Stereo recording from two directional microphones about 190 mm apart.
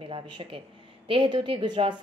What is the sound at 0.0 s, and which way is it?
A woman's voice, 25° right (ahead or behind).